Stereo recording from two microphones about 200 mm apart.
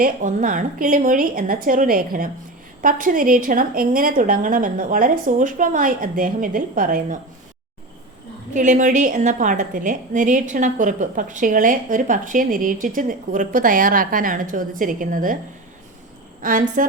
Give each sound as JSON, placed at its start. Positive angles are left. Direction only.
{"t": 0.0, "sound": "a woman's voice", "side_deg": -40}
{"t": 8.5, "sound": "a woman's voice", "side_deg": -40}
{"t": 16.4, "sound": "a woman's voice", "side_deg": -40}